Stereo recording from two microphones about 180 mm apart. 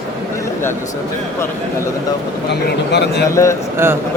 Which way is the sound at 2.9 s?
70° left (ahead or behind).